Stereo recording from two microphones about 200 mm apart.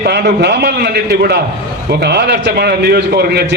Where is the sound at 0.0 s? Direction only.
55° right (ahead or behind).